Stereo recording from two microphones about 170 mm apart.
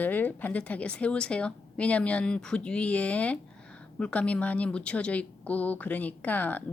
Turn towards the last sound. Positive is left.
turn(degrees=10)  # may be behind; listen again after turning